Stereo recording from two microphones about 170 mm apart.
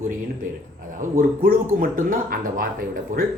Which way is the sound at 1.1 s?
55° right (ahead or behind).